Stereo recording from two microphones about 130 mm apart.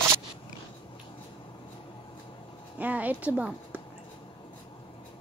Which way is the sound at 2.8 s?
10° right (ahead or behind).